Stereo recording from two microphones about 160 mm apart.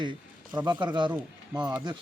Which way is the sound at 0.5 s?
30° right (ahead or behind).